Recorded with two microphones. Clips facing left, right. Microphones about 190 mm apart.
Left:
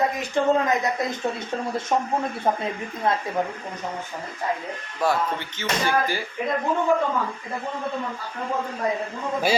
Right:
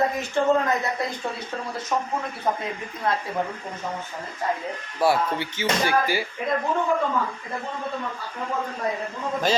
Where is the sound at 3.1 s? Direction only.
20° left (ahead or behind).